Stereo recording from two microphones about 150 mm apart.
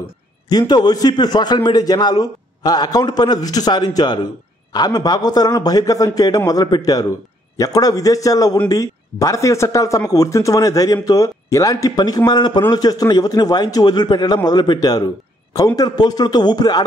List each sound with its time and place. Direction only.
0.5 s speech: 25° left (ahead or behind)